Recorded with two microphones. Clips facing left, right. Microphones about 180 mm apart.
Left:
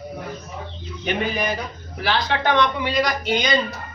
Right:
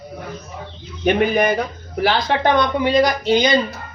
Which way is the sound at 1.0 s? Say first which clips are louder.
Right 8 dB; 55° right (ahead or behind).